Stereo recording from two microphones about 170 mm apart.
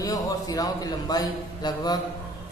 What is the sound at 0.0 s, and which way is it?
A man's voice, 20° left (ahead or behind).